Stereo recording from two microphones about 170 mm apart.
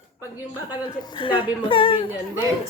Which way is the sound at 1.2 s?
30° left (ahead or behind).